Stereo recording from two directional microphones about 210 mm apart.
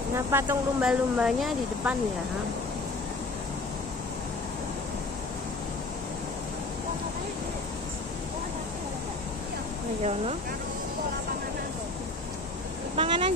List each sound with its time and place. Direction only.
0.1 s speech: 10° right (ahead or behind)
12.9 s speech: 25° right (ahead or behind)